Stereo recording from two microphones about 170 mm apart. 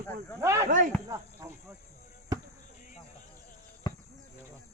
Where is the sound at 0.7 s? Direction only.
45° right (ahead or behind).